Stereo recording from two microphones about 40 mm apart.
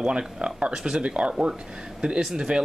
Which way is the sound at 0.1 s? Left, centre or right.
Right.